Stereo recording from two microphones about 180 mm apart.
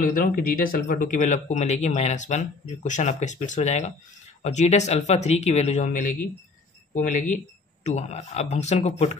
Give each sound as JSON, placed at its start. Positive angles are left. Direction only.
{"t": 0.0, "sound": "speech", "side_deg": 50}